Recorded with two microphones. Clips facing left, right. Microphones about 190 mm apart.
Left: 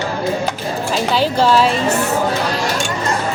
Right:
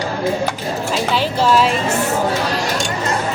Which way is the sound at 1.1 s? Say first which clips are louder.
Left 2 dB; 40° left (ahead or behind).